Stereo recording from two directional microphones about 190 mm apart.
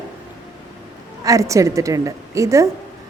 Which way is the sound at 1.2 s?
15° right (ahead or behind).